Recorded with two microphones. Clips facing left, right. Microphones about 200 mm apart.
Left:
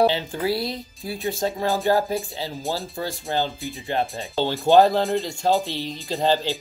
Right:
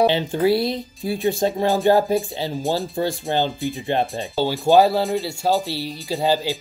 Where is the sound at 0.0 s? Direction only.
25° right (ahead or behind).